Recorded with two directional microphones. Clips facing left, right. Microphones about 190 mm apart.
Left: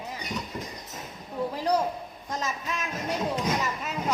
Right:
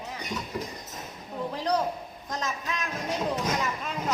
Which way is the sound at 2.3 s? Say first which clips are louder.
Left 1 dB; 10° left (ahead or behind).